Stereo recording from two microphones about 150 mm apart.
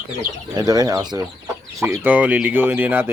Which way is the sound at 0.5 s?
25° right (ahead or behind).